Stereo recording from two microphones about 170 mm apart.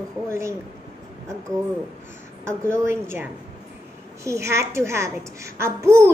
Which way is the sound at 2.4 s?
15° right (ahead or behind).